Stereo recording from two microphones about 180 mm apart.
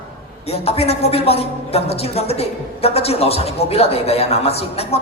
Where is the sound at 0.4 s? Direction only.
35° left (ahead or behind).